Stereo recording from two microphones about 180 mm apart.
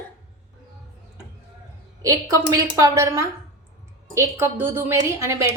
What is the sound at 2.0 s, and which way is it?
A woman's voice, 20° right (ahead or behind).